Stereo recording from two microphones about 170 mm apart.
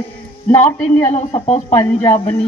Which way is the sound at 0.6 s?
10° left (ahead or behind).